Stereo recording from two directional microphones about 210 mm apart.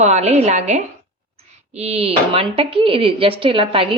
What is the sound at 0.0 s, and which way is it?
A woman's voice, 30° right (ahead or behind).